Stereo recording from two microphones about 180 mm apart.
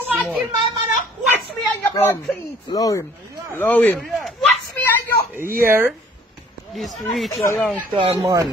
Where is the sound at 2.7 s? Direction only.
20° left (ahead or behind); by 4.5 s centre (ahead or behind).